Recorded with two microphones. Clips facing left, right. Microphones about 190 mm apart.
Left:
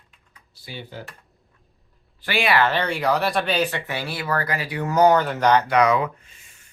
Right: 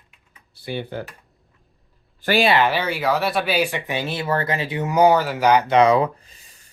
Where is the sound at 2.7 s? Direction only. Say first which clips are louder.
Even; 5° right (ahead or behind).